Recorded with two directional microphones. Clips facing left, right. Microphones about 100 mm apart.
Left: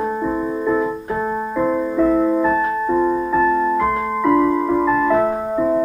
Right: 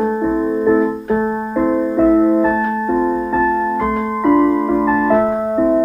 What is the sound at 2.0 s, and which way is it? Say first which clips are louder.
Music: right 4 dB; 15° right (ahead or behind).